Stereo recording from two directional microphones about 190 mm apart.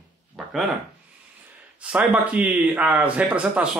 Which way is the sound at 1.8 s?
5° right (ahead or behind).